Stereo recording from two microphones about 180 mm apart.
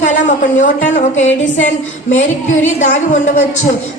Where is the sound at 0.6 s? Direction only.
40° left (ahead or behind).